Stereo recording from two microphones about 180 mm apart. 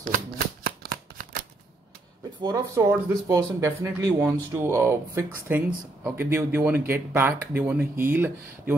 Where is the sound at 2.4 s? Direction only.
20° right (ahead or behind).